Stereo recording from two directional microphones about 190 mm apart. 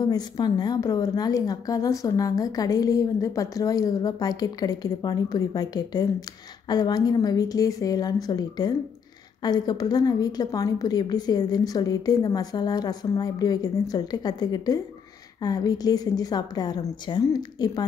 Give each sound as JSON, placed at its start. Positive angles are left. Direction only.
{"t": 0.0, "sound": "a woman's voice", "side_deg": 20}